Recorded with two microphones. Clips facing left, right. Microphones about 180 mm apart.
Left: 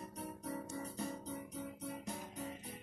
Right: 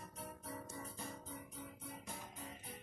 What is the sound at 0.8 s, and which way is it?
Music, 40° left (ahead or behind).